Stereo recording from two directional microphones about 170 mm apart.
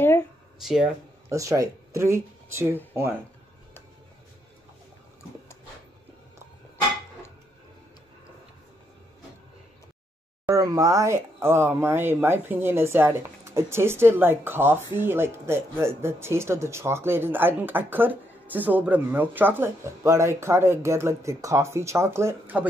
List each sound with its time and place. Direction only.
0.6 s speech: centre (ahead or behind)
1.3 s speech: 20° right (ahead or behind)
10.4 s speech: 20° right (ahead or behind)